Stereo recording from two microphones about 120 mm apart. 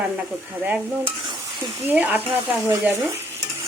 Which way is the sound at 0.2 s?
10° right (ahead or behind).